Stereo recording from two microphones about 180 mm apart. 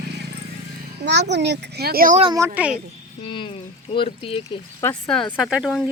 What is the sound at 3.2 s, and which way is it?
Speech, 25° left (ahead or behind).